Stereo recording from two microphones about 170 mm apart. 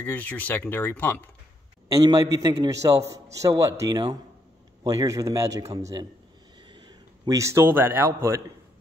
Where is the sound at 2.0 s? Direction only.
20° right (ahead or behind).